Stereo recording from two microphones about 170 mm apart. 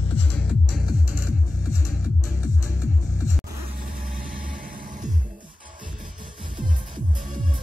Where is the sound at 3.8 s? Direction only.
55° right (ahead or behind).